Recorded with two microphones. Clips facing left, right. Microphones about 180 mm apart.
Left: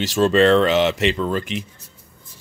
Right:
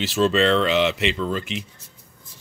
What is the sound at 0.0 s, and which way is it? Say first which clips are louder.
Speech: left 4 dB; 45° left (ahead or behind).